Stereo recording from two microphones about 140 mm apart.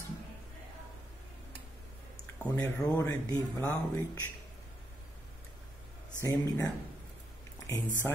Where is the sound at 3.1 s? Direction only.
25° left (ahead or behind).